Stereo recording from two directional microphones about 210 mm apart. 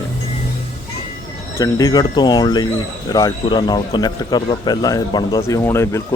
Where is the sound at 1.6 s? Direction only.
15° left (ahead or behind).